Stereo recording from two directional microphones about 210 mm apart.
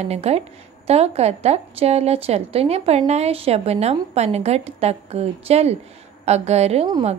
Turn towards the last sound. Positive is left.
turn(degrees=-25)  # may be behind; listen again after turning